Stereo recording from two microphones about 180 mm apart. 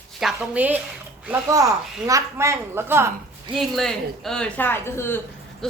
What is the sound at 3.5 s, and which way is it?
A woman's voice, centre (ahead or behind).